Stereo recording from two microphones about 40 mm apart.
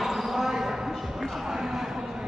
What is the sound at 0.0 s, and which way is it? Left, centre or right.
Basketball bounce, centre.